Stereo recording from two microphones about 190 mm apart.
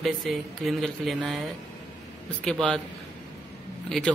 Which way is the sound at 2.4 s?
5° left (ahead or behind).